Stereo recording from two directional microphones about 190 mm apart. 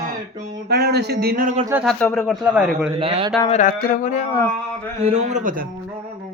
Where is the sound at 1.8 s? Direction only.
10° left (ahead or behind).